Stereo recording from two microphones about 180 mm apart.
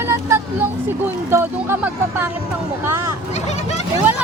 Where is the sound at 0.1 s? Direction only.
15° right (ahead or behind).